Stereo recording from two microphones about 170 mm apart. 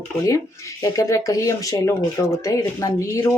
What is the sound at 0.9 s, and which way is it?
Speech, 20° left (ahead or behind).